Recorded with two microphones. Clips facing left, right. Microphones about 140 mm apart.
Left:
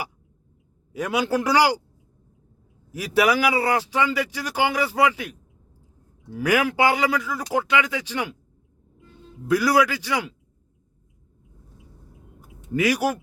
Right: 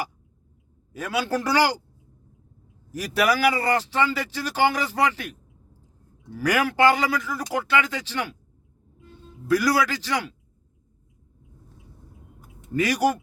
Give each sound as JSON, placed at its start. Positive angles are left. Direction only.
{"t": 0.9, "sound": "speech", "side_deg": 15}
{"t": 3.2, "sound": "speech", "side_deg": 10}
{"t": 6.4, "sound": "speech", "side_deg": 10}
{"t": 9.5, "sound": "speech", "side_deg": 15}
{"t": 12.7, "sound": "speech", "side_deg": 10}